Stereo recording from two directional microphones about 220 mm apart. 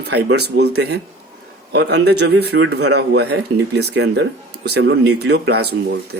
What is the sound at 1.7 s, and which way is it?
Speech, 50° right (ahead or behind).